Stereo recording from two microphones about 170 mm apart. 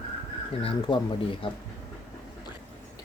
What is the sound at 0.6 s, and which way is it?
Speech, 30° left (ahead or behind).